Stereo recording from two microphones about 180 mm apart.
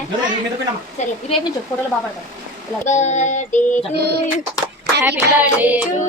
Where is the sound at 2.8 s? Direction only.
40° left (ahead or behind).